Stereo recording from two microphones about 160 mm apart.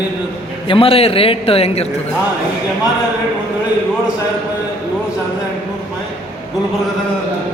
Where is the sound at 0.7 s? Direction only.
35° left (ahead or behind).